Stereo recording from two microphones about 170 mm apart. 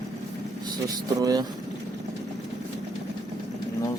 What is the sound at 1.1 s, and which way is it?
Speech, 20° right (ahead or behind).